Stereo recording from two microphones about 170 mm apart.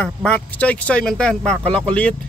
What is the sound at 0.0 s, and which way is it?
Speech, 5° left (ahead or behind).